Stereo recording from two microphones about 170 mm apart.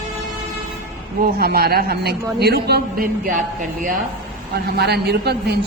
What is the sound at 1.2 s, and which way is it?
A man's voice, 65° right (ahead or behind).